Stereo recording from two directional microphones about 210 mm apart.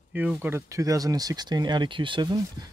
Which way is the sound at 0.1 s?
5° right (ahead or behind).